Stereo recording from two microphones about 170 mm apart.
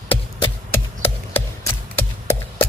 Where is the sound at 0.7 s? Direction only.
10° left (ahead or behind).